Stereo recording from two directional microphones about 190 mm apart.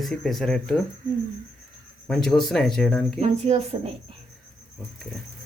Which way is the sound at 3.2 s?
35° right (ahead or behind).